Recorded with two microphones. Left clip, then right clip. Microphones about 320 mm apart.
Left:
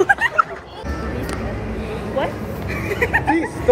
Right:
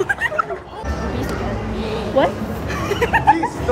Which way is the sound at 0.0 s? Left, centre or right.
Centre.